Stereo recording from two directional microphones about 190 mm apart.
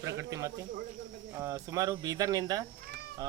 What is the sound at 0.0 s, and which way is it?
Speech, 15° right (ahead or behind).